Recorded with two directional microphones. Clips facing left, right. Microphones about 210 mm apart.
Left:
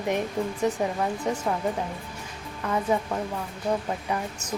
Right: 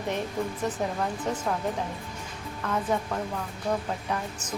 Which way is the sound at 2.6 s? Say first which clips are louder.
Left 3 dB; 10° left (ahead or behind).